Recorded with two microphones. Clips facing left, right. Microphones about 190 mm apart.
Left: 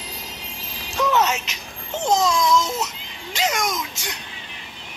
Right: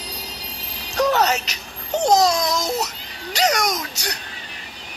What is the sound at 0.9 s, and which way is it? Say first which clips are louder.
Music: right 2 dB; 40° right (ahead or behind).